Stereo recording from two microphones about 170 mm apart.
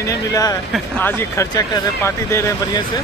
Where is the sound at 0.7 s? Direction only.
10° left (ahead or behind).